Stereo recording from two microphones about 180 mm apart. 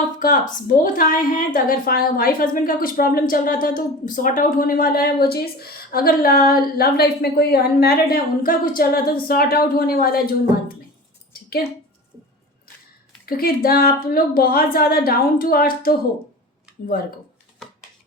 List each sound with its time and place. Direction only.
0.2 s a woman's voice: 45° left (ahead or behind)
13.2 s a woman's voice: 55° left (ahead or behind)